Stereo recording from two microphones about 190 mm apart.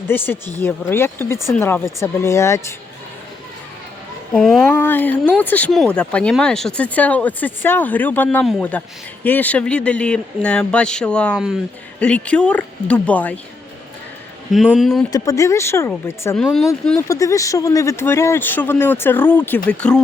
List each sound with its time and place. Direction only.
0.1 s speech: 10° left (ahead or behind)
4.4 s speech: centre (ahead or behind)
14.5 s speech: centre (ahead or behind)
15.1 s speech: 20° left (ahead or behind)
16.4 s speech: centre (ahead or behind)
17.1 s speech: 15° left (ahead or behind)